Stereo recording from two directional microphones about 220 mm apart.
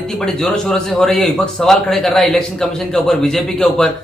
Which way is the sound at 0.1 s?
Centre (ahead or behind).